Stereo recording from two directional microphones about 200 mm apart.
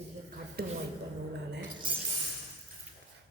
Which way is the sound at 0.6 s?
50° right (ahead or behind).